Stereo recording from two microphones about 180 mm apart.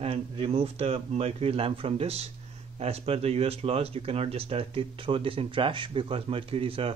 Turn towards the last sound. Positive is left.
turn(degrees=-30)  # may be behind; listen again after turning